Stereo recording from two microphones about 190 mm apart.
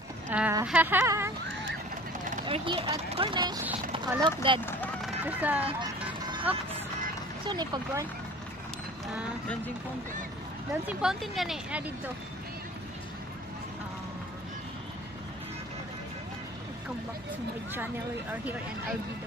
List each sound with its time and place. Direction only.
0.3 s speech: 10° right (ahead or behind)
2.4 s speech: 25° right (ahead or behind)
5.0 s speech: 10° right (ahead or behind)
7.4 s speech: 20° right (ahead or behind)
10.9 s speech: 5° right (ahead or behind)
18.3 s speech: 10° right (ahead or behind)